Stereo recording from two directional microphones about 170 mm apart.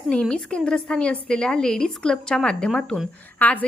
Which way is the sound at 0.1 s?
5° left (ahead or behind).